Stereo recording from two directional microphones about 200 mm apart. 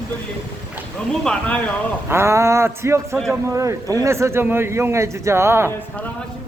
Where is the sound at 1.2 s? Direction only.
5° left (ahead or behind).